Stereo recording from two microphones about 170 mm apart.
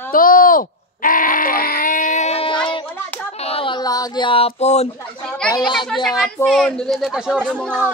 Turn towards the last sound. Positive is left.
turn(degrees=5)  # may be behind; listen again after turning